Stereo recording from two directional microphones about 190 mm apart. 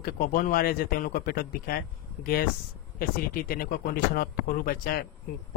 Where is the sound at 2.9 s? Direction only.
50° left (ahead or behind).